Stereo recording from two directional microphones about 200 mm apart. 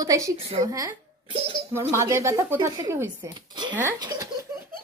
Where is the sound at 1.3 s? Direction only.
30° right (ahead or behind).